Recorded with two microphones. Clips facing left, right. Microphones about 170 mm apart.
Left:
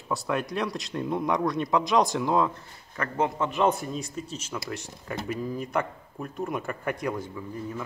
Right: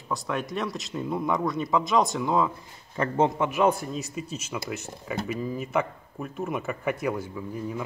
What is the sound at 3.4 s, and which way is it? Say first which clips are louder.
Speech: right 1 dB; 5° right (ahead or behind).